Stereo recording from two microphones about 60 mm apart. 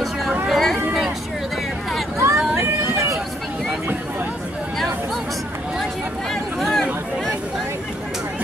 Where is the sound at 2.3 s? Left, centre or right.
Centre.